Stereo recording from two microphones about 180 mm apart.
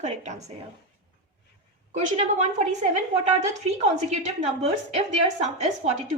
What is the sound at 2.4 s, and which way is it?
Speech, 40° right (ahead or behind).